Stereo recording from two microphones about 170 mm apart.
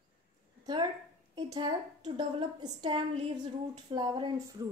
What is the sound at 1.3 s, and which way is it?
A child's voice, 25° right (ahead or behind).